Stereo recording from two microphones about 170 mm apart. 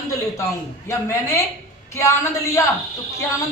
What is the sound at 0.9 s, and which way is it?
A woman's voice, 15° left (ahead or behind).